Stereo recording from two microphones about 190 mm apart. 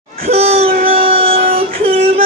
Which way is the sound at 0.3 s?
35° right (ahead or behind).